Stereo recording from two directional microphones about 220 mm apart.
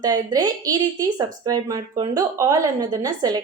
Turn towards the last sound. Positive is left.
turn(degrees=-15)  # may be behind; listen again after turning